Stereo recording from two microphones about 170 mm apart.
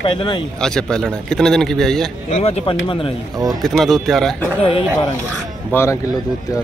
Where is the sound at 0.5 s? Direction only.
5° left (ahead or behind).